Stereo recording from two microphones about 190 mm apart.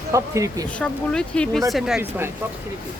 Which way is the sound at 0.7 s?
5° left (ahead or behind).